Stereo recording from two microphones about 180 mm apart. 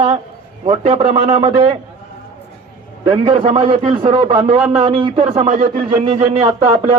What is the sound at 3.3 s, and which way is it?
A man's voice, 40° right (ahead or behind).